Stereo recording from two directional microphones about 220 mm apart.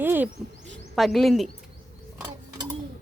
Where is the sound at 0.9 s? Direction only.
Centre (ahead or behind).